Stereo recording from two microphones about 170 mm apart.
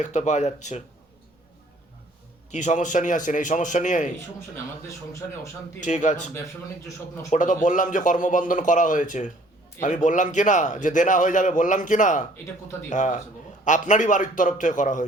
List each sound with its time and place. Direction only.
0.0 s a man's voice: 45° left (ahead or behind)
2.5 s a man's voice: 45° left (ahead or behind)
4.5 s a man's voice: 15° left (ahead or behind)
5.8 s a man's voice: 45° left (ahead or behind)